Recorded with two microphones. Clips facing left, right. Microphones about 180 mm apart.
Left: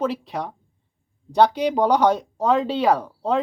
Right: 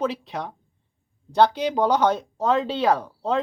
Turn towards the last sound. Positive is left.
turn(degrees=10)  # may be behind; listen again after turning